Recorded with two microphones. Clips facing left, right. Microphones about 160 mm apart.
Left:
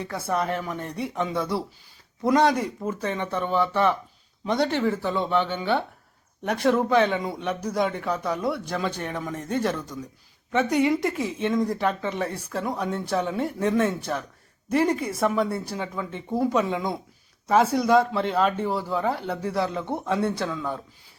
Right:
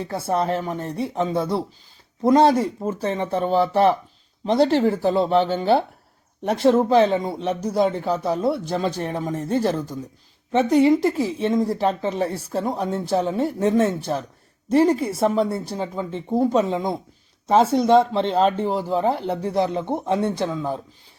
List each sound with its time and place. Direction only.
0.3 s speech: 30° right (ahead or behind)